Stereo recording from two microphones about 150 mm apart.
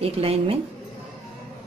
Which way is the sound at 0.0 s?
40° right (ahead or behind).